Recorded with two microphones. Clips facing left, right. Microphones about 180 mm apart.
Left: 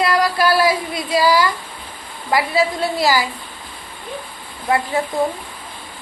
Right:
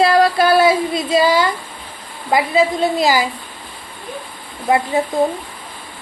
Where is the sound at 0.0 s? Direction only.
25° right (ahead or behind).